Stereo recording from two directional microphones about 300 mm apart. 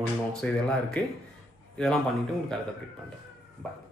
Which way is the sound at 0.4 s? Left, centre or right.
Centre.